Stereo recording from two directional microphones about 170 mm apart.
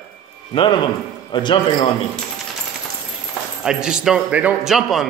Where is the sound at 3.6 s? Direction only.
5° right (ahead or behind).